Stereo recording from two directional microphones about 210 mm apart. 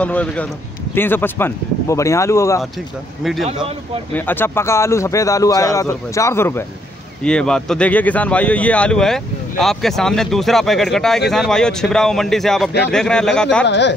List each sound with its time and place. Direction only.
0.0 s speech: 5° left (ahead or behind)
4.1 s speech: 10° left (ahead or behind)
13.7 s speech: 55° left (ahead or behind)